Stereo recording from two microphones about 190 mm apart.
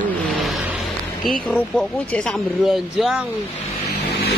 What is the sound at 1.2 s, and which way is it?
Speech, centre (ahead or behind).